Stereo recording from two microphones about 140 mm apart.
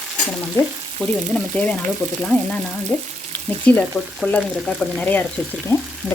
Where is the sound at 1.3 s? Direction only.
10° left (ahead or behind).